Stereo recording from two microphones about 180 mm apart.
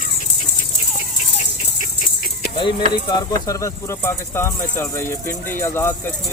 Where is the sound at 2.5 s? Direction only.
25° left (ahead or behind).